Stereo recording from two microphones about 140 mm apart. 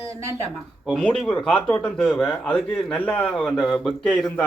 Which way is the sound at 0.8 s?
5° left (ahead or behind).